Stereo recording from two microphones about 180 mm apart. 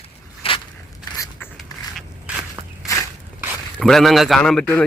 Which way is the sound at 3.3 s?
Centre (ahead or behind).